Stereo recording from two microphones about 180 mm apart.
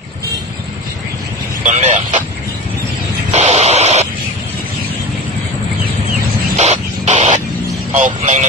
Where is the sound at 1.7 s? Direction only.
40° right (ahead or behind).